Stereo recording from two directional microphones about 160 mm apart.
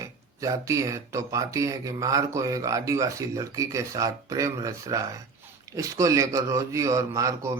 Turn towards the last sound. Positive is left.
turn(degrees=-20)  # may be behind; listen again after turning